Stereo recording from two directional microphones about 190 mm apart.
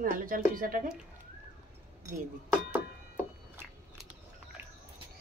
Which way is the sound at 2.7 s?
10° right (ahead or behind).